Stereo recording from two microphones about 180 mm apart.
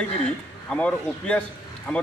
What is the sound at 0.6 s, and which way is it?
Speech, 5° left (ahead or behind).